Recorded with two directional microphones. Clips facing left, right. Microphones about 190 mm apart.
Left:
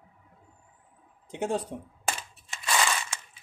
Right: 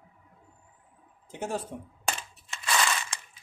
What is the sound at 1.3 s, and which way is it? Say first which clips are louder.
Speech: left 4 dB; 20° left (ahead or behind).